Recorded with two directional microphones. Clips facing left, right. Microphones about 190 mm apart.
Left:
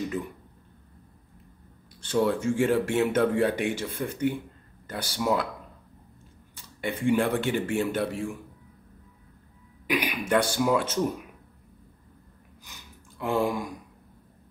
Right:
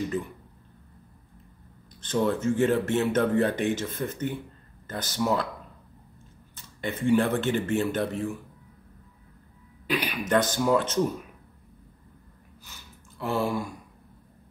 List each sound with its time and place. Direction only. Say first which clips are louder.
2.0 s speech: left 1 dB; 10° left (ahead or behind)
6.5 s speech: left 1 dB; 10° left (ahead or behind)
9.8 s speech: left 1 dB; 15° left (ahead or behind)
12.7 s a sound: left 1 dB; 15° left (ahead or behind)
13.2 s speech: left 1 dB; 15° left (ahead or behind)